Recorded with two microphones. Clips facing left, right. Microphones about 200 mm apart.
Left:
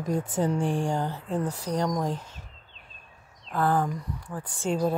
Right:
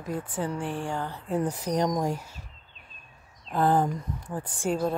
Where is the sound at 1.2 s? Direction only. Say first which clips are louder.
Right 1 dB; 5° right (ahead or behind).